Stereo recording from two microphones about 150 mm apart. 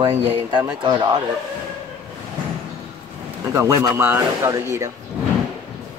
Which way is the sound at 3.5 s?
20° right (ahead or behind).